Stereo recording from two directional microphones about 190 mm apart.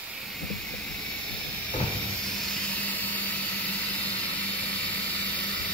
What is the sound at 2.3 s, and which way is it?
Vehicle, centre (ahead or behind).